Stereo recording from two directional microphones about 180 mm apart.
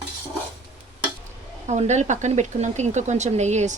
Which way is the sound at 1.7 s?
40° right (ahead or behind).